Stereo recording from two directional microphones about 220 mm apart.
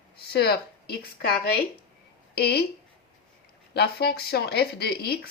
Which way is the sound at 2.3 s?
45° left (ahead or behind).